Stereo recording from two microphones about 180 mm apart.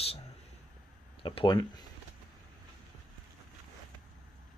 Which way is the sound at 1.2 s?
25° left (ahead or behind).